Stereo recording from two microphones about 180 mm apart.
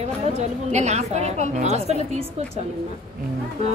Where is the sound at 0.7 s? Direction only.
40° right (ahead or behind).